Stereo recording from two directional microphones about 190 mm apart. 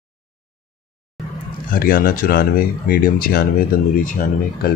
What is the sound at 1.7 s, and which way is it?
Speech, 50° left (ahead or behind).